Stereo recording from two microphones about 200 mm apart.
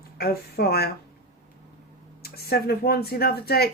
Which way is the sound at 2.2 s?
50° left (ahead or behind).